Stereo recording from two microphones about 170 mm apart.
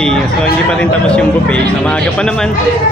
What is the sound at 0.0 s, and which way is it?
A man's voice, 5° left (ahead or behind).